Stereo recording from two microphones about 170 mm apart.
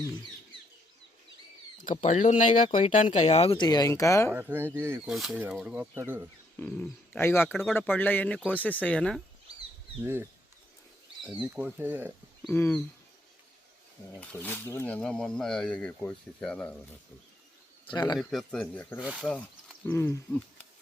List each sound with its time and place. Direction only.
1.8 s speech: 45° left (ahead or behind); by 4.3 s 20° left (ahead or behind)
4.4 s speech: 15° right (ahead or behind)
5.0 s speech: centre (ahead or behind)
6.6 s speech: 10° left (ahead or behind)
10.0 s speech: 15° right (ahead or behind)
12.4 s speech: 10° left (ahead or behind)
14.2 s speech: 10° left (ahead or behind)
18.2 s speech: centre (ahead or behind)
18.9 s speech: 5° right (ahead or behind)
19.4 s speech: 10° left (ahead or behind)